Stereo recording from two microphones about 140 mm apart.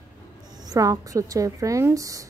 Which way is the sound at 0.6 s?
25° right (ahead or behind).